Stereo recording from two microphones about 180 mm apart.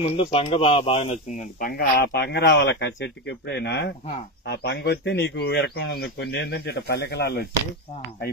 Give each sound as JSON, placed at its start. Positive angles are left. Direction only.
{"t": 0.0, "sound": "a man's voice", "side_deg": 30}